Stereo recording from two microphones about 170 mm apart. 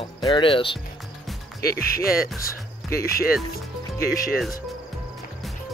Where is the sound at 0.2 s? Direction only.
30° left (ahead or behind).